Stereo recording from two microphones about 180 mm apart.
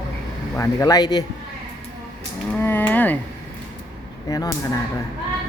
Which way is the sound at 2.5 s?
10° left (ahead or behind).